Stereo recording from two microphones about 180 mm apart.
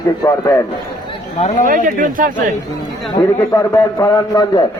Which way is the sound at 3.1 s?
20° left (ahead or behind).